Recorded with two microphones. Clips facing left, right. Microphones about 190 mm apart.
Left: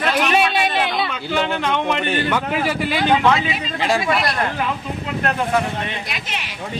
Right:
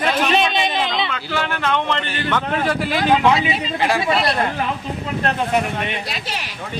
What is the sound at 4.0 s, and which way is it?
Speech, 30° right (ahead or behind).